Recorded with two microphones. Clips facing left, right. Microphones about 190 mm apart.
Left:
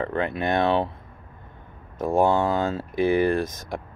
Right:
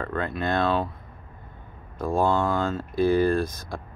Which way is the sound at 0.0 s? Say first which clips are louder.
Left 3 dB; 20° left (ahead or behind).